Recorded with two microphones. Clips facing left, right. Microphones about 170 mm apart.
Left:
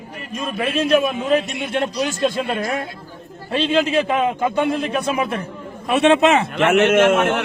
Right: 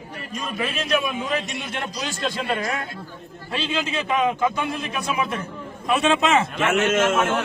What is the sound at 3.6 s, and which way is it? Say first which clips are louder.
A man's voice: left 8 dB; 60° left (ahead or behind).